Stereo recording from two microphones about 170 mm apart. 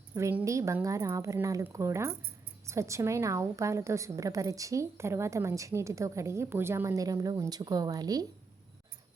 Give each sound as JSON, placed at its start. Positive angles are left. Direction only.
{"t": 0.1, "sound": "a woman's voice", "side_deg": -15}